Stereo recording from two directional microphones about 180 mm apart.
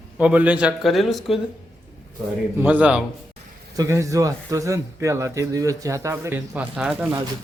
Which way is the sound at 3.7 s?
20° right (ahead or behind).